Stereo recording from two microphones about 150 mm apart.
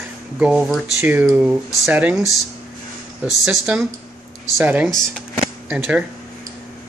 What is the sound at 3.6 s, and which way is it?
Speech, 10° right (ahead or behind).